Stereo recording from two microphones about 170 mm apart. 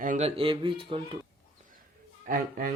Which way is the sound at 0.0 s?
50° right (ahead or behind).